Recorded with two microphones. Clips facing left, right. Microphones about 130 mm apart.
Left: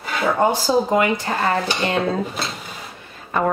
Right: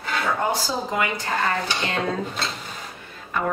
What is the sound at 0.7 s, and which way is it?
Speech, 30° left (ahead or behind).